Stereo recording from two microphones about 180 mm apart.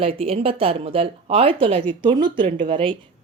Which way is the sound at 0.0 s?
30° right (ahead or behind).